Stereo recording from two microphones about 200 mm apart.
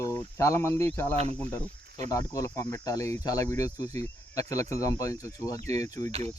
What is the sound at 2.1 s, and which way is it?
Speech, 15° left (ahead or behind).